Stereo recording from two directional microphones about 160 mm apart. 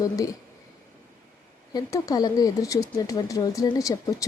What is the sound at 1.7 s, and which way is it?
Speech, 20° left (ahead or behind).